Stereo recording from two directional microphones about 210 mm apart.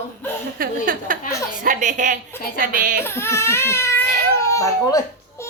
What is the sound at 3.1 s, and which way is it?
Speech, 10° left (ahead or behind).